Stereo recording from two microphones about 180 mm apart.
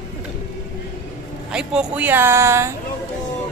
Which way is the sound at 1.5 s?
5° right (ahead or behind).